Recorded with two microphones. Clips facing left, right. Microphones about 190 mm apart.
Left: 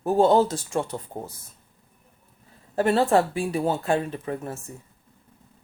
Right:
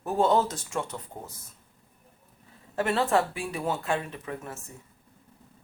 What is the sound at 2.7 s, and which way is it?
Speech, 35° left (ahead or behind).